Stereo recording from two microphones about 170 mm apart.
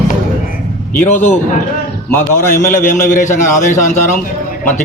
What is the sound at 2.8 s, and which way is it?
A man's voice, 50° left (ahead or behind).